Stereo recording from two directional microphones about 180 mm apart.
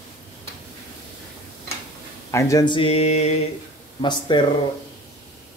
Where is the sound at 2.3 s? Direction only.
20° left (ahead or behind); by 3.3 s 35° left (ahead or behind).